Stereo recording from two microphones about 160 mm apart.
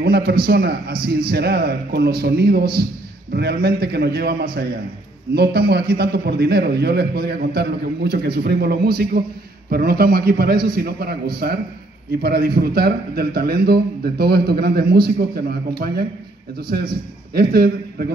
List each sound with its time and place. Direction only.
0.0 s a man's voice: 75° right (ahead or behind)